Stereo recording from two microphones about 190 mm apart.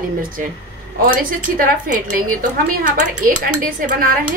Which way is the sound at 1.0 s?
50° right (ahead or behind).